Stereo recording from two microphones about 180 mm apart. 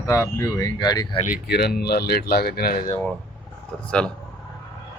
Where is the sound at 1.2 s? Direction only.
50° left (ahead or behind).